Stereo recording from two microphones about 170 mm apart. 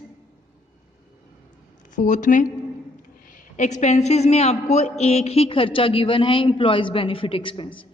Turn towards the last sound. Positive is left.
turn(degrees=30)  # may be behind; listen again after turning